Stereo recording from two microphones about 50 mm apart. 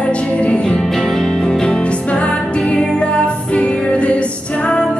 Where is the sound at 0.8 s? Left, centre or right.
Centre.